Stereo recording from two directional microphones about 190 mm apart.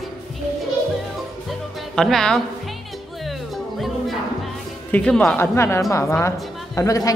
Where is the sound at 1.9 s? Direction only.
5° left (ahead or behind).